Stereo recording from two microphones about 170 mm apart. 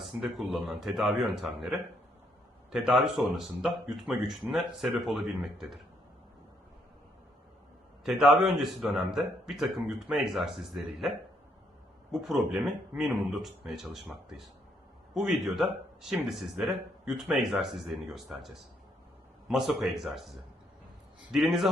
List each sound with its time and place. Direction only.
0.0 s speech: centre (ahead or behind)
8.0 s speech: centre (ahead or behind)
12.1 s speech: centre (ahead or behind)
21.3 s speech: centre (ahead or behind)